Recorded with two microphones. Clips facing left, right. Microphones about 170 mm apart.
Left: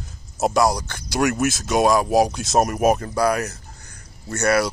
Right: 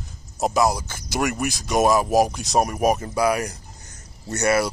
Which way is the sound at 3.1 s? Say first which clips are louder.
Left 1 dB; 10° right (ahead or behind).